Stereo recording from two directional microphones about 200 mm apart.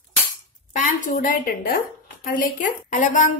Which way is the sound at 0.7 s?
40° left (ahead or behind).